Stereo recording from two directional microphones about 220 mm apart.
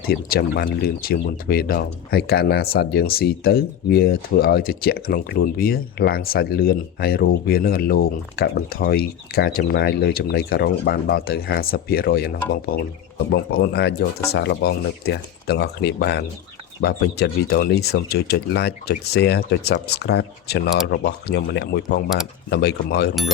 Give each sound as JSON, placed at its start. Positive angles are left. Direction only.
{"t": 0.1, "sound": "speech", "side_deg": 45}